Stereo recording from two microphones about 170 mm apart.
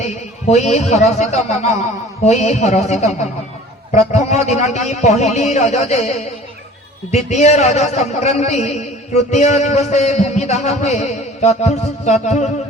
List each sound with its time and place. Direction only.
0.0 s a man's voice: 40° left (ahead or behind)